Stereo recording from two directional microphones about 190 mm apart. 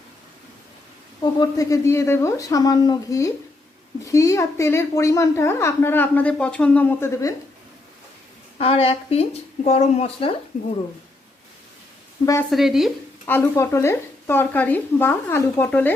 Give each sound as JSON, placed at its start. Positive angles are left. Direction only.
{"t": 1.2, "sound": "a woman's voice", "side_deg": 20}
{"t": 8.5, "sound": "a woman's voice", "side_deg": 30}
{"t": 12.2, "sound": "a woman's voice", "side_deg": 15}
{"t": 12.5, "sound": "frying", "side_deg": 0}
{"t": 13.2, "sound": "a woman's voice", "side_deg": 10}